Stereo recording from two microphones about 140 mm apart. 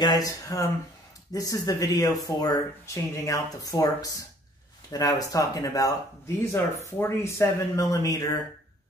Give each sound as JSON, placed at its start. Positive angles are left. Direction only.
{"t": 0.0, "sound": "speech", "side_deg": 30}